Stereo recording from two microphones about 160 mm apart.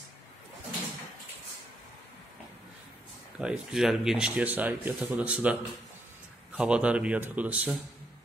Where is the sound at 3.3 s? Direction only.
5° right (ahead or behind).